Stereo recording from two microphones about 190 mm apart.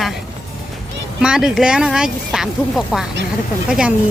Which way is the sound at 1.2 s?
5° right (ahead or behind).